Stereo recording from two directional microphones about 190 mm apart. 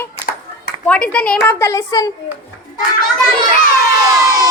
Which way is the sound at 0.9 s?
5° left (ahead or behind).